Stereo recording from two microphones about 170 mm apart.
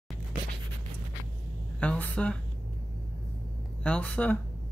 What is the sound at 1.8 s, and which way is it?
Music, 10° left (ahead or behind).